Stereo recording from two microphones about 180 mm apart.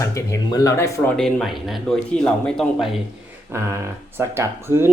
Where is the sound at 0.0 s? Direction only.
15° left (ahead or behind).